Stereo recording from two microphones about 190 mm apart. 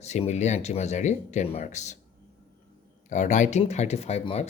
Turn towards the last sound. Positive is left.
turn(degrees=30)  # may be behind; listen again after turning